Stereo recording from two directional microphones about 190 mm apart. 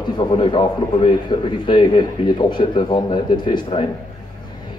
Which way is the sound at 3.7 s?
30° left (ahead or behind).